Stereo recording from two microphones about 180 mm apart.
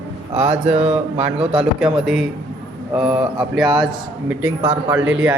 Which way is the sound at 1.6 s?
5° right (ahead or behind).